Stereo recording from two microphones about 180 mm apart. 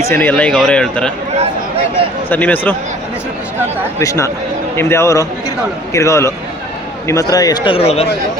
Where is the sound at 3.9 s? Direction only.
15° left (ahead or behind); by 8.0 s 35° left (ahead or behind).